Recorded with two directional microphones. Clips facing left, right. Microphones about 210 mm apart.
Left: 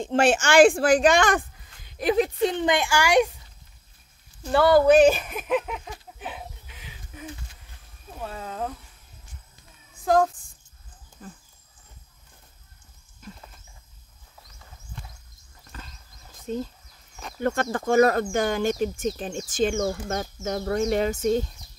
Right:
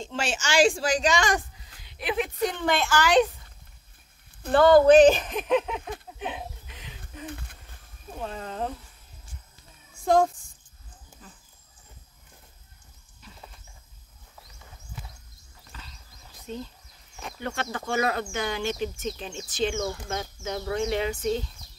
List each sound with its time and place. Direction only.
0.0 s speech: 55° left (ahead or behind); by 2.3 s 40° left (ahead or behind)
2.4 s speech: 20° left (ahead or behind)
4.6 s speech: 10° left (ahead or behind)
7.2 s a sound: 60° right (ahead or behind)
8.2 s speech: 5° left (ahead or behind)
10.0 s a child's voice: centre (ahead or behind)
11.2 s a sound: 50° left (ahead or behind)
13.2 s a sound: 50° left (ahead or behind)
15.7 s wild animals: 45° left (ahead or behind)
16.5 s speech: 45° left (ahead or behind)